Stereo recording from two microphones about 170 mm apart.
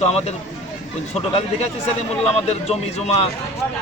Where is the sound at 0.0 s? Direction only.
40° left (ahead or behind).